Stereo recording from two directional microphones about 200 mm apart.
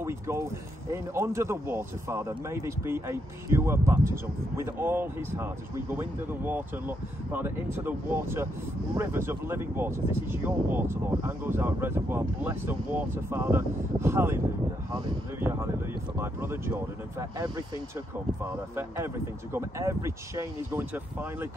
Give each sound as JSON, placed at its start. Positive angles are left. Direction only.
{"t": 0.0, "sound": "speech", "side_deg": -15}
{"t": 18.4, "sound": "speech", "side_deg": -10}